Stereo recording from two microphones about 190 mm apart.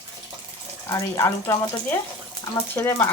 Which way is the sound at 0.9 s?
15° left (ahead or behind).